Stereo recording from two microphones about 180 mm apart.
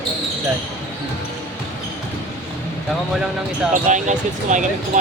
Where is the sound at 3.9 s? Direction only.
45° right (ahead or behind).